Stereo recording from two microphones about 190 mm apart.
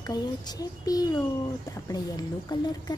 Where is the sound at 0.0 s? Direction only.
20° left (ahead or behind).